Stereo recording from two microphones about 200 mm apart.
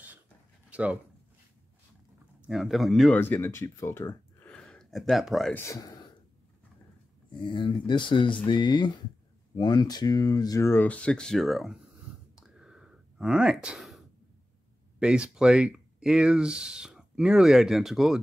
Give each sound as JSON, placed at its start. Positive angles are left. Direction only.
{"t": 0.7, "sound": "a sound", "side_deg": -5}
{"t": 2.4, "sound": "speech", "side_deg": 0}
{"t": 3.2, "sound": "speech", "side_deg": 10}
{"t": 5.7, "sound": "speech", "side_deg": 15}
{"t": 7.3, "sound": "speech", "side_deg": 25}
{"t": 12.4, "sound": "a sound", "side_deg": -5}
{"t": 15.0, "sound": "speech", "side_deg": -5}